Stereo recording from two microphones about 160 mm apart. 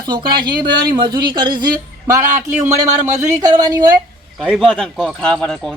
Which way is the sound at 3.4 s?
25° right (ahead or behind).